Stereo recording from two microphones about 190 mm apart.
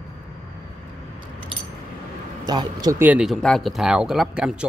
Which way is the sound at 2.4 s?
20° right (ahead or behind).